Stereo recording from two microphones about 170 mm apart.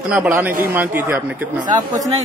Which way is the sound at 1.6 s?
20° right (ahead or behind).